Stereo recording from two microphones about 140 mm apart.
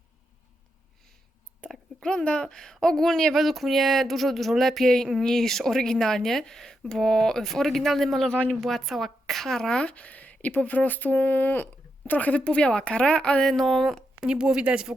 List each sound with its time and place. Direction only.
1.6 s speech: 5° left (ahead or behind)